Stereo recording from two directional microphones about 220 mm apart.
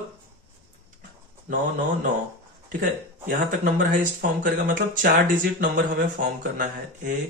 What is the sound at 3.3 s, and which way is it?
Speech, 40° right (ahead or behind).